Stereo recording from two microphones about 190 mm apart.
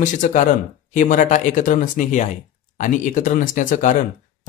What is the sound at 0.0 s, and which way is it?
Speech, 40° left (ahead or behind).